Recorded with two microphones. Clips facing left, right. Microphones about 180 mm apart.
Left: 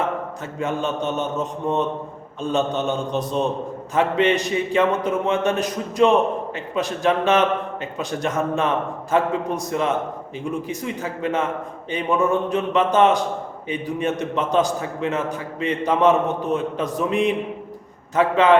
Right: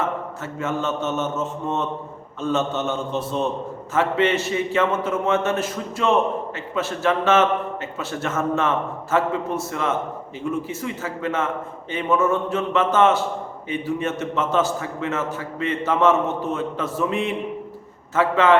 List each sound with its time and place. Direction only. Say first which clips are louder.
0.6 s a man's voice: left 1 dB; 15° left (ahead or behind)